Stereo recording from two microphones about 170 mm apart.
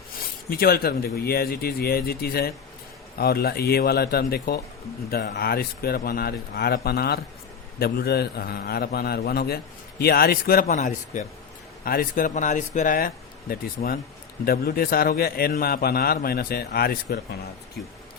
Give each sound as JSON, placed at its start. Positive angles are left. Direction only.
{"t": 0.5, "sound": "a man's voice", "side_deg": 65}
{"t": 5.1, "sound": "a man's voice", "side_deg": 75}
{"t": 10.7, "sound": "speech", "side_deg": 45}
{"t": 11.9, "sound": "a man's voice", "side_deg": 55}